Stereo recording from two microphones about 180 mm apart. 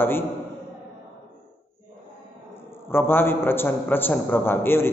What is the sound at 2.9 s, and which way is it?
A man's voice, 10° left (ahead or behind).